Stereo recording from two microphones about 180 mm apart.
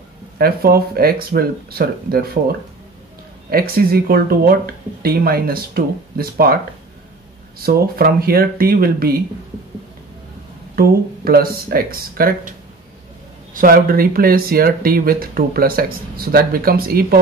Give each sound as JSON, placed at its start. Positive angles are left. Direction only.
{"t": 0.4, "sound": "speech", "side_deg": -60}
{"t": 10.8, "sound": "speech", "side_deg": -55}